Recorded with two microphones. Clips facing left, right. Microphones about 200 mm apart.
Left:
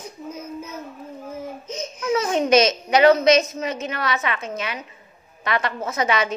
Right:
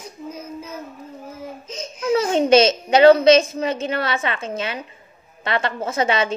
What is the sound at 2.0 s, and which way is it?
A woman's voice, 30° right (ahead or behind).